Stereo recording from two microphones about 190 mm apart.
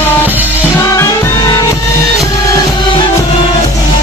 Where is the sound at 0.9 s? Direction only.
15° left (ahead or behind).